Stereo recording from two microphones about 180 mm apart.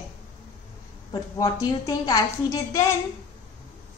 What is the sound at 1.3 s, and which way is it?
A woman's voice, 20° left (ahead or behind).